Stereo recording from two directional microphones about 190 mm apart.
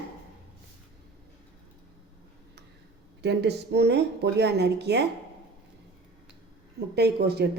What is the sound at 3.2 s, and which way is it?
A woman's voice, 60° right (ahead or behind).